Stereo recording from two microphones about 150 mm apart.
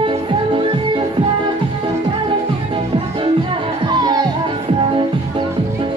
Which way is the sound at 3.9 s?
30° right (ahead or behind).